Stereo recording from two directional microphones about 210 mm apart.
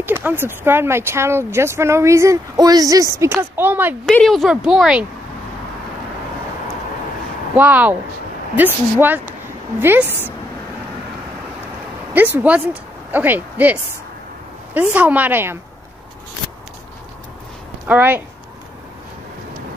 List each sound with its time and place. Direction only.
0.0 s speech: 10° right (ahead or behind)
4.0 s speech: centre (ahead or behind)
7.5 s speech: 10° right (ahead or behind)
8.9 s speech: 10° right (ahead or behind)
12.4 s speech: 5° right (ahead or behind)
17.8 s speech: 10° right (ahead or behind)